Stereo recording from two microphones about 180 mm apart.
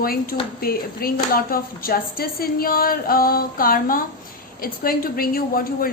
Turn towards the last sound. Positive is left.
turn(degrees=55)  # may be behind; listen again after turning